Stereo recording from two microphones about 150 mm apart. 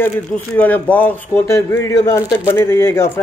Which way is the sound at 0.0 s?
10° left (ahead or behind).